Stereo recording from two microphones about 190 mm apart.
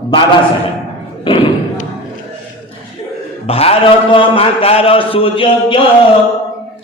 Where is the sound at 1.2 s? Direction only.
25° left (ahead or behind).